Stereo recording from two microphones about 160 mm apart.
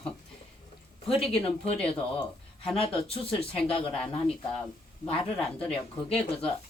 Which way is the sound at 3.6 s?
35° left (ahead or behind).